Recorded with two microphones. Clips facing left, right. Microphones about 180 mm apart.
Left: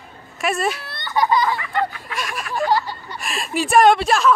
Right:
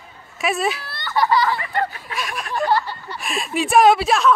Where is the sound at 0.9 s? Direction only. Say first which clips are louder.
Even; 15° left (ahead or behind).